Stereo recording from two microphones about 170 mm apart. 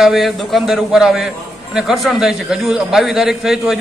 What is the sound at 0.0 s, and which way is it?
A man's voice, centre (ahead or behind).